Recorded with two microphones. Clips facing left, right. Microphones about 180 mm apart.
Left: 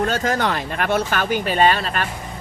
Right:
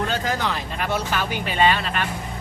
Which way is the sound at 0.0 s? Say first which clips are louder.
Left 4 dB; 45° left (ahead or behind).